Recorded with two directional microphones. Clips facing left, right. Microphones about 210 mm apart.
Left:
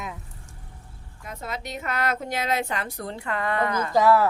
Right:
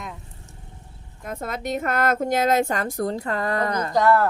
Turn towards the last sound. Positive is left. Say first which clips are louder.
# even
turn(degrees=5)  # may be behind; listen again after turning